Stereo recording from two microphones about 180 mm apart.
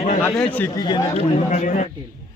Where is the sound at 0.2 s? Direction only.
10° left (ahead or behind).